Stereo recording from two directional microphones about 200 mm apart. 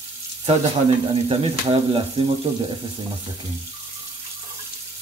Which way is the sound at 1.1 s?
30° right (ahead or behind).